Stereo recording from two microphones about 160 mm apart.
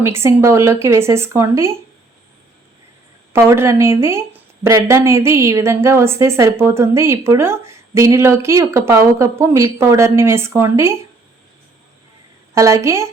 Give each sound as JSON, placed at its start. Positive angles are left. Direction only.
{"t": 0.0, "sound": "a woman's voice", "side_deg": -15}
{"t": 3.3, "sound": "a woman's voice", "side_deg": -15}
{"t": 12.5, "sound": "a woman's voice", "side_deg": -20}